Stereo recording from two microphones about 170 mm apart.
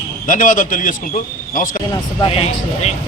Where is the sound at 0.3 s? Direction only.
50° left (ahead or behind).